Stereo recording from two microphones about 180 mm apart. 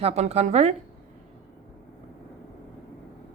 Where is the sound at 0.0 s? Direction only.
35° right (ahead or behind).